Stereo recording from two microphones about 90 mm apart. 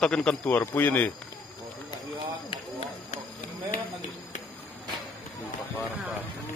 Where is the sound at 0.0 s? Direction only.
10° left (ahead or behind).